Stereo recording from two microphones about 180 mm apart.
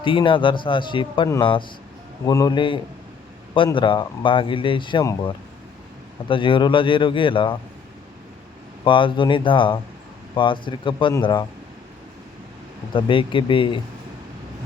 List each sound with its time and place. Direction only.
0.0 s speech: 30° left (ahead or behind)
8.8 s speech: 30° left (ahead or behind)
12.9 s speech: 30° left (ahead or behind)